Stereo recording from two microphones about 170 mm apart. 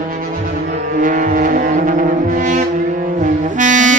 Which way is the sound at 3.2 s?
50° right (ahead or behind).